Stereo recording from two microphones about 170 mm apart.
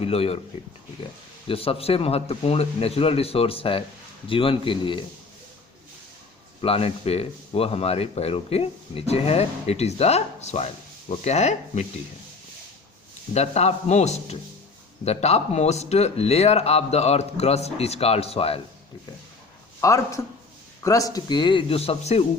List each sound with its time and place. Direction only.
0.0 s speech: 35° left (ahead or behind)
1.5 s speech: 35° left (ahead or behind)
6.6 s speech: 35° left (ahead or behind)
13.3 s speech: 40° left (ahead or behind)
19.8 s speech: 20° left (ahead or behind); by 22.3 s 35° left (ahead or behind)